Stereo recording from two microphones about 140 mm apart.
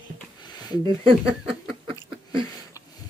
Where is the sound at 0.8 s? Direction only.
40° right (ahead or behind).